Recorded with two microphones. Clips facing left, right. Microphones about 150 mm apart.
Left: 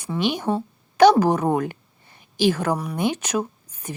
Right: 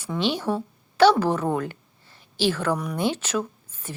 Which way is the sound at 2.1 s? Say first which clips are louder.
Left 4 dB; 15° left (ahead or behind).